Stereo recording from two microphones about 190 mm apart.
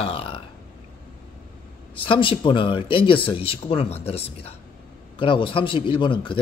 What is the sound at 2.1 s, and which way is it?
Speech, 25° left (ahead or behind).